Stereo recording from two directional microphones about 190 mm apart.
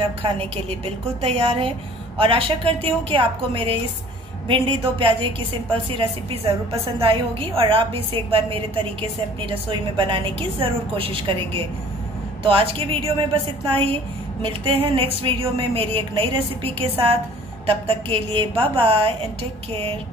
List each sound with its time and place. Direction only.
1.2 s a woman's voice: 35° right (ahead or behind)